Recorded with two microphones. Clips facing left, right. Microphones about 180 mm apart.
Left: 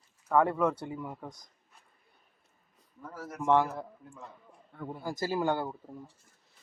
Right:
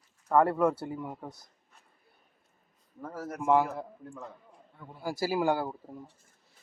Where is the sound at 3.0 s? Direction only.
50° right (ahead or behind).